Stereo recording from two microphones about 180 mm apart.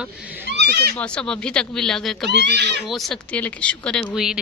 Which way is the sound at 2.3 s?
70° right (ahead or behind).